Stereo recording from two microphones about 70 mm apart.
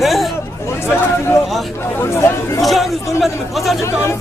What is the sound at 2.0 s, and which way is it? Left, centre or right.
Speech, left.